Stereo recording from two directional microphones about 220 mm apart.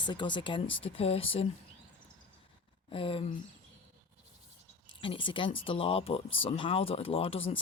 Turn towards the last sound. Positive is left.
turn(degrees=25)  # may be behind; listen again after turning